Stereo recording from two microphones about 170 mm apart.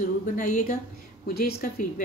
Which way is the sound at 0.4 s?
50° left (ahead or behind).